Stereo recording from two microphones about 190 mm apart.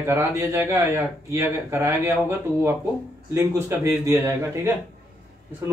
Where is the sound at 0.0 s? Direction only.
15° right (ahead or behind).